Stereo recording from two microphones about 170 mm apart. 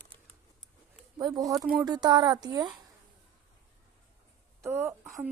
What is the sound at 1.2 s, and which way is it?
Speech, 25° right (ahead or behind).